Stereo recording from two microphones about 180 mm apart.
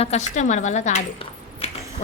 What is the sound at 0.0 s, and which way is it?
Speech, 40° left (ahead or behind).